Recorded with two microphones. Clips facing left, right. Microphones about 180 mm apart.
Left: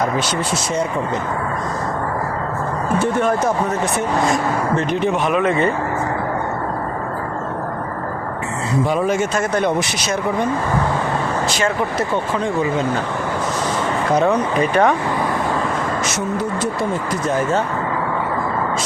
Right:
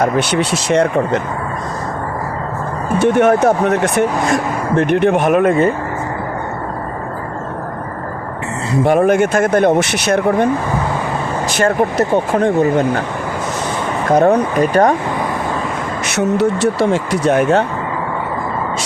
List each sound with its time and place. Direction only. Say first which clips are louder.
0.0 s speech: right 5 dB; 70° right (ahead or behind)
3.0 s speech: right 8 dB; 70° right (ahead or behind); by 5.5 s 50° right (ahead or behind)
8.8 s speech: right 7 dB; 65° right (ahead or behind); by 12.5 s 50° right (ahead or behind)
14.1 s speech: right 6 dB; 55° right (ahead or behind)
14.6 s speech: right 2 dB; 40° right (ahead or behind)
16.0 s speech: right 7 dB; 70° right (ahead or behind)